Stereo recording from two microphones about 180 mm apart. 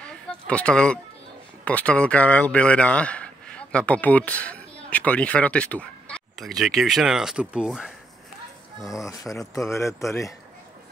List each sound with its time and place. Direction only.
0.0 s a sound: 5° left (ahead or behind)
1.6 s speech: 5° left (ahead or behind)
8.8 s speech: 20° left (ahead or behind)